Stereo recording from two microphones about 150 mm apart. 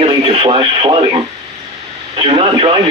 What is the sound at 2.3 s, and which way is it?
Speech, 35° right (ahead or behind).